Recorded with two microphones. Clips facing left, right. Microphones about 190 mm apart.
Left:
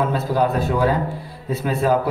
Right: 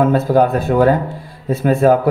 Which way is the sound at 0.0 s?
50° right (ahead or behind).